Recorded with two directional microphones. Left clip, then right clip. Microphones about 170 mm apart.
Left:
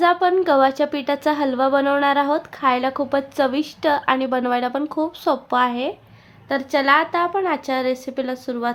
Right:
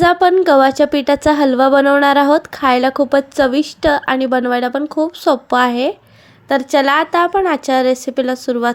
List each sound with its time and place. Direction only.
0.0 s a woman's voice: 35° right (ahead or behind)
6.5 s a woman's voice: 45° right (ahead or behind)